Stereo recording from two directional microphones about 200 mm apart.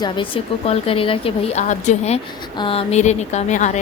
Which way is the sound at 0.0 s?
25° left (ahead or behind).